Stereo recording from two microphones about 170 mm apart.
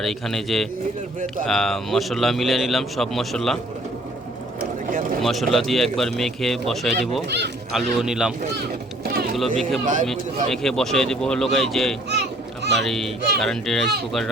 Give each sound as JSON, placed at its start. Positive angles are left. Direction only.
{"t": 0.0, "sound": "a man's voice", "side_deg": 0}
{"t": 5.2, "sound": "a man's voice", "side_deg": 0}
{"t": 7.3, "sound": "speech", "side_deg": -85}
{"t": 7.7, "sound": "a man's voice", "side_deg": 0}
{"t": 9.8, "sound": "speech", "side_deg": -50}
{"t": 10.1, "sound": "a man's voice", "side_deg": 0}
{"t": 12.0, "sound": "children playing", "side_deg": -80}
{"t": 12.8, "sound": "a man's voice", "side_deg": 0}